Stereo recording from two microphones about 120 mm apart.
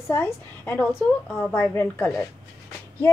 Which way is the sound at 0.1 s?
15° left (ahead or behind).